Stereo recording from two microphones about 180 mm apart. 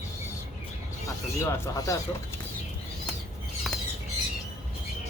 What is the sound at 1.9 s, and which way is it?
Speech, 20° left (ahead or behind).